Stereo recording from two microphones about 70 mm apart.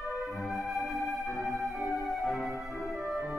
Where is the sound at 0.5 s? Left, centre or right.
Centre.